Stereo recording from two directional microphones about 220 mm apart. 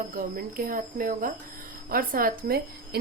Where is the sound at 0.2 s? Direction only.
40° right (ahead or behind).